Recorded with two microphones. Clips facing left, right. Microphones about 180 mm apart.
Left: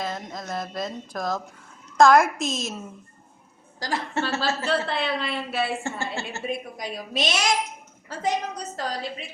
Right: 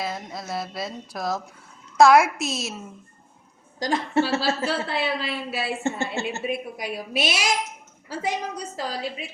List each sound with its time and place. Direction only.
0.0 s a woman's voice: 10° right (ahead or behind)
3.8 s a woman's voice: 20° right (ahead or behind); by 5.7 s centre (ahead or behind)
5.8 s a woman's voice: 20° right (ahead or behind)
6.4 s a woman's voice: 5° right (ahead or behind)